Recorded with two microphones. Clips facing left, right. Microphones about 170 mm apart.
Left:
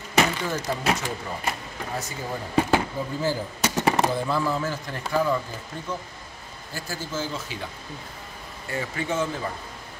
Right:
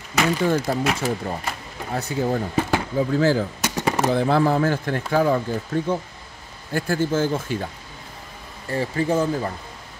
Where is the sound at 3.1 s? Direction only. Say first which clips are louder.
Right 8 dB; 90° right.